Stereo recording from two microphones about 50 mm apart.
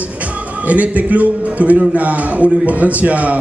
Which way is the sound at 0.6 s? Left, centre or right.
Right.